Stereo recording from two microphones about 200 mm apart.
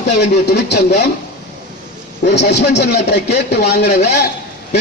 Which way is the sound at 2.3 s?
60° left (ahead or behind).